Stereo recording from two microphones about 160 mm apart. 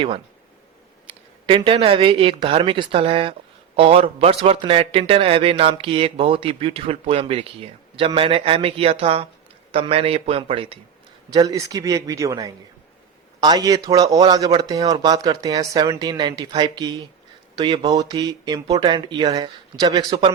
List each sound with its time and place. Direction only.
1.5 s a man's voice: 35° right (ahead or behind)
11.3 s a man's voice: 25° right (ahead or behind)